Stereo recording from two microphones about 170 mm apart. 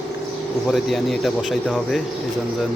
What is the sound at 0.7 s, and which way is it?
Speech, centre (ahead or behind).